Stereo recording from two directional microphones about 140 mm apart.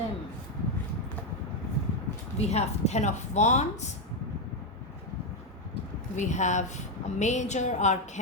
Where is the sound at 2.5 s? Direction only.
50° left (ahead or behind).